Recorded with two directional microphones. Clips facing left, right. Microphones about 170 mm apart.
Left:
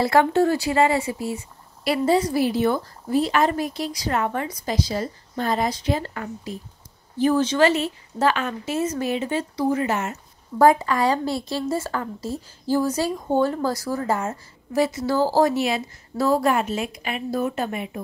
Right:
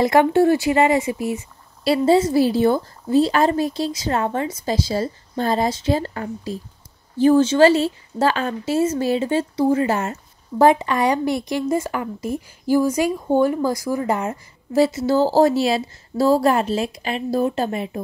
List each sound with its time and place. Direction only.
0.0 s speech: 15° right (ahead or behind)
1.9 s speech: 25° right (ahead or behind)